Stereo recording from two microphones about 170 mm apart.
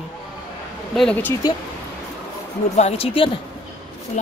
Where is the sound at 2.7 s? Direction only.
40° left (ahead or behind).